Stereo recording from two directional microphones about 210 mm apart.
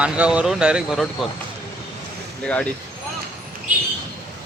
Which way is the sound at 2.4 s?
5° left (ahead or behind).